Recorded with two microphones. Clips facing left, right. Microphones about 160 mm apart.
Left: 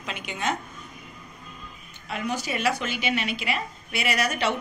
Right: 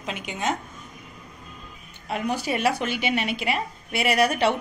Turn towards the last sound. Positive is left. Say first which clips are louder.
# right 5 dB
turn(degrees=-55)  # may be behind; listen again after turning